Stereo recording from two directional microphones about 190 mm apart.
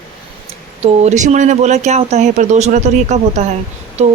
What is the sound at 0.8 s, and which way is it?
A woman's voice, 35° right (ahead or behind).